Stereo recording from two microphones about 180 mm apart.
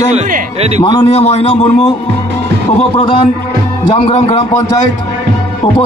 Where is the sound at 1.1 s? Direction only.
35° left (ahead or behind).